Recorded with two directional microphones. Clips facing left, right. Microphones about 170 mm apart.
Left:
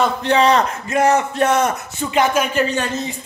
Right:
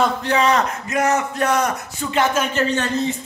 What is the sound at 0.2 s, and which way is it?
A man's voice, 30° left (ahead or behind).